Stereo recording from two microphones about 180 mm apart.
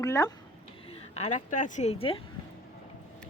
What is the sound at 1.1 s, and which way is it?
Speech, 40° left (ahead or behind).